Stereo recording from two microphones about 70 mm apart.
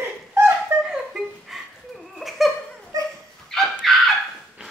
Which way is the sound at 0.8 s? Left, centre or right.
Centre.